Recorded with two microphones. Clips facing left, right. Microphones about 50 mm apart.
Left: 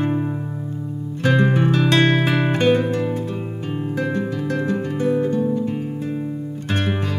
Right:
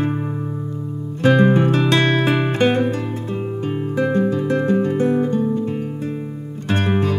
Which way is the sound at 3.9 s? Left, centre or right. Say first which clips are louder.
Right 7 dB; right.